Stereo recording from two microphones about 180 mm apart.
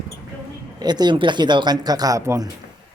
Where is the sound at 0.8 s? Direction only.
25° right (ahead or behind).